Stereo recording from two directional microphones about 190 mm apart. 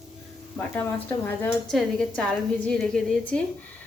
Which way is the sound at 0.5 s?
10° left (ahead or behind).